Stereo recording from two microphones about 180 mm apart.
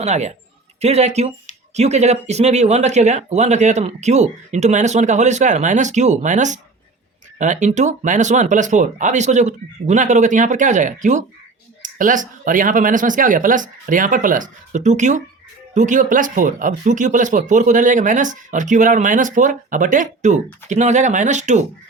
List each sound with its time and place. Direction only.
0.0 s speech: 40° right (ahead or behind)